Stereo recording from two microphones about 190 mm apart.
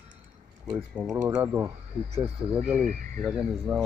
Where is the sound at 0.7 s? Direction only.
5° right (ahead or behind).